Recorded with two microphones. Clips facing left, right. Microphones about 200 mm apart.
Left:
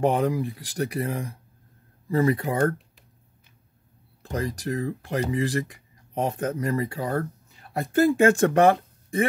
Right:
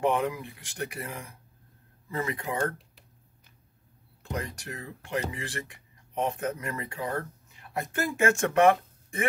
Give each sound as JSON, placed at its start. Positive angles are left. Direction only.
{"t": 0.0, "sound": "speech", "side_deg": 35}
{"t": 4.2, "sound": "speech", "side_deg": 35}